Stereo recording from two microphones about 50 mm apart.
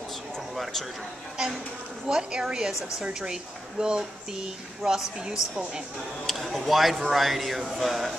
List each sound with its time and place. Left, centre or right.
2.0 s speech: centre